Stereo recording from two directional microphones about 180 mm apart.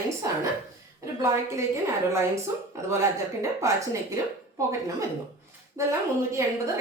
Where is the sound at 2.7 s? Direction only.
15° right (ahead or behind).